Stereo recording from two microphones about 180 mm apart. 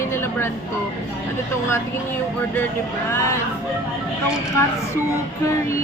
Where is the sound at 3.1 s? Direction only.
15° left (ahead or behind).